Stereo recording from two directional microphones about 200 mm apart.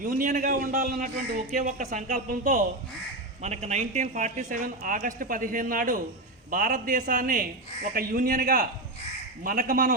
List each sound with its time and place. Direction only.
0.0 s a man's voice: 45° right (ahead or behind)